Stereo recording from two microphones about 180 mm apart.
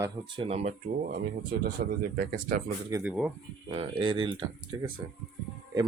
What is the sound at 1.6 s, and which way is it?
Speech, 55° right (ahead or behind).